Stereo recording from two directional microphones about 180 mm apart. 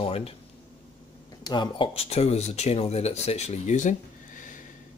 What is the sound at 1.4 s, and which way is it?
Speech, 25° left (ahead or behind).